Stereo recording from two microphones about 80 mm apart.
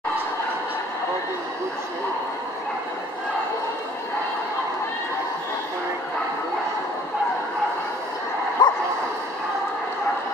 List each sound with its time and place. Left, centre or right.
8.6 s bow-wow: left